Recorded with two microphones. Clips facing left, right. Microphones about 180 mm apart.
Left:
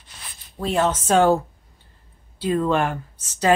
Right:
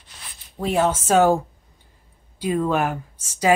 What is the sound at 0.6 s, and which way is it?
A woman's voice, 10° right (ahead or behind).